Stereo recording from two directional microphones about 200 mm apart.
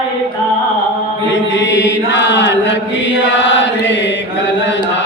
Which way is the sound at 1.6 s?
65° left (ahead or behind).